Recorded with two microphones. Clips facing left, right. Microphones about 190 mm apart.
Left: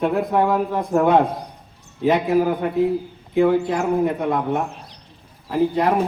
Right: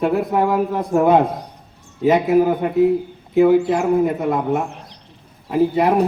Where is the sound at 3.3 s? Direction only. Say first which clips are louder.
Right 4 dB; 5° right (ahead or behind).